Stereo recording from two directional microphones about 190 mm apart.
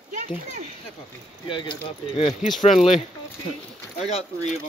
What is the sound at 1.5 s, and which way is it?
Speech, 25° left (ahead or behind).